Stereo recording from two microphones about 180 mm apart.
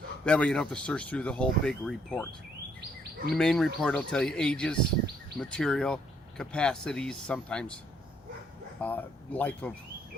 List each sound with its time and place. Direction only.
0.3 s speech: 5° left (ahead or behind)
3.3 s speech: 5° left (ahead or behind)
8.8 s speech: 10° left (ahead or behind)